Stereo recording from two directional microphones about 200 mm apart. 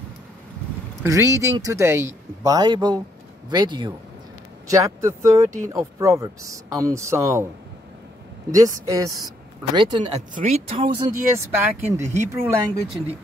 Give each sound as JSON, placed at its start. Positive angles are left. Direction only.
{"t": 1.0, "sound": "speech", "side_deg": -15}
{"t": 8.5, "sound": "speech", "side_deg": -15}
{"t": 11.3, "sound": "speech", "side_deg": -10}